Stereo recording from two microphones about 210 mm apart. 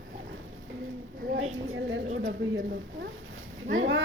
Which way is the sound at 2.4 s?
60° right (ahead or behind).